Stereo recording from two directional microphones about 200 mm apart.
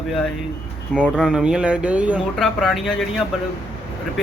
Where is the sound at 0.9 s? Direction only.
5° right (ahead or behind).